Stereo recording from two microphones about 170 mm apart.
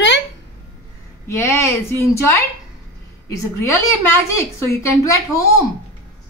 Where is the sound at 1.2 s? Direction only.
15° left (ahead or behind).